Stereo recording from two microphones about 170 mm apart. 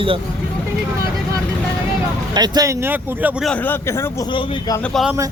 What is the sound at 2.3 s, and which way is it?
Speech, 25° right (ahead or behind).